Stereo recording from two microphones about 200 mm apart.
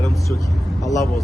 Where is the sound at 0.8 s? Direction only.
15° left (ahead or behind).